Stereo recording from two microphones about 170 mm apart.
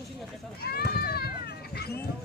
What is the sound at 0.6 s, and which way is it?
Children playing, 65° left (ahead or behind).